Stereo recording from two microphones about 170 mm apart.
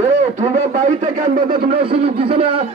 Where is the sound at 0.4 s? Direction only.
45° right (ahead or behind).